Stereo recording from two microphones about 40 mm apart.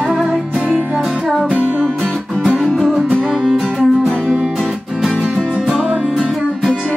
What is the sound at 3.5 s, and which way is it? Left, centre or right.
Music, centre.